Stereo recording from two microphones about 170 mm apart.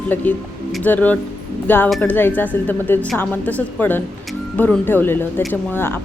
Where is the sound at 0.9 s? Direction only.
10° left (ahead or behind).